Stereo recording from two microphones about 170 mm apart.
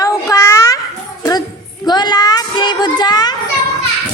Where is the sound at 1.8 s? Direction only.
25° left (ahead or behind).